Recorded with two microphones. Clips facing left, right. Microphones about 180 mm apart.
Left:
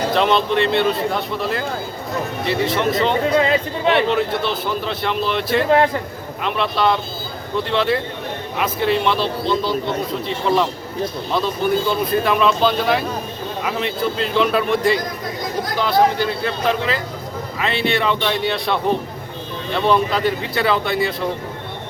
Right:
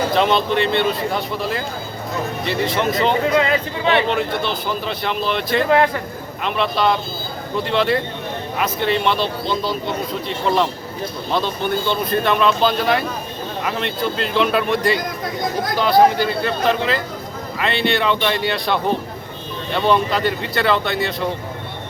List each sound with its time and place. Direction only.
0.1 s speech: centre (ahead or behind)
3.2 s speech: 30° left (ahead or behind)
4.1 s speech: centre (ahead or behind)